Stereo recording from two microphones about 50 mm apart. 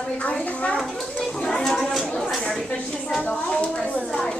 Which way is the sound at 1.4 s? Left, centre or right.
Centre.